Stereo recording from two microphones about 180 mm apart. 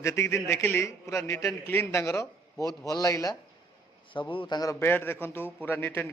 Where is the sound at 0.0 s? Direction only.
15° left (ahead or behind).